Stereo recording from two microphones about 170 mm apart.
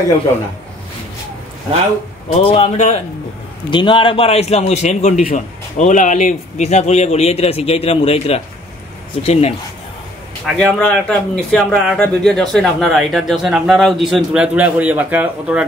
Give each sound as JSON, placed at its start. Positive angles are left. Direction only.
{"t": 2.3, "sound": "speech", "side_deg": 35}
{"t": 10.4, "sound": "speech", "side_deg": 5}